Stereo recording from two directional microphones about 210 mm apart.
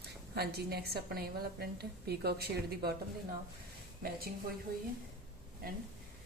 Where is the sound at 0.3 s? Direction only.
50° right (ahead or behind).